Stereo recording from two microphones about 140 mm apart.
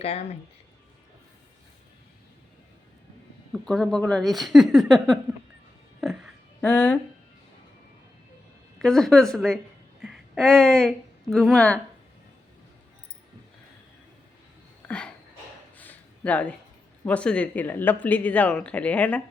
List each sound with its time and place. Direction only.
0.0 s speech: 45° left (ahead or behind)
3.5 s speech: 5° left (ahead or behind)
6.0 s a sound: centre (ahead or behind)
6.6 s speech: 10° left (ahead or behind)
8.8 s a woman's voice: 5° left (ahead or behind)
14.8 s a sound: 10° left (ahead or behind)
17.1 s speech: 10° left (ahead or behind)